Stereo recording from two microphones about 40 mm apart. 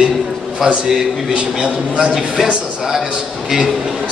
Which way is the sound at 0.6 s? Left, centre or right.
Centre.